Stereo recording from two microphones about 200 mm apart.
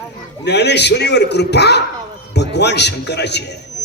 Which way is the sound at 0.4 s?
60° left (ahead or behind).